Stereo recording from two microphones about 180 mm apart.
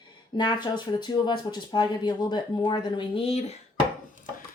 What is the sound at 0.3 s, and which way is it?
Speech, 25° left (ahead or behind).